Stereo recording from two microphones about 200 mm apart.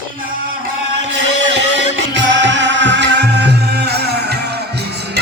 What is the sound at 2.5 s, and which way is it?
Music, 65° right (ahead or behind).